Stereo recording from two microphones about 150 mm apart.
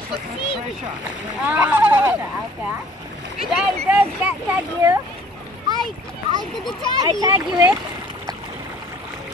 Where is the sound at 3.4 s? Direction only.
Centre (ahead or behind).